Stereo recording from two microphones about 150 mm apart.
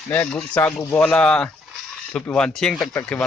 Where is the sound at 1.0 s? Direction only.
5° left (ahead or behind).